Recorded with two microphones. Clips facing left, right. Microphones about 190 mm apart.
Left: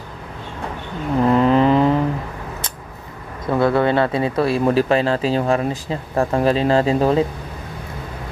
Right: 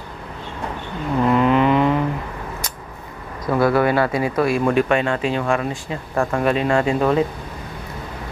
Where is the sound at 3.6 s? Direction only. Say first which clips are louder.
Left 1 dB; 25° left (ahead or behind).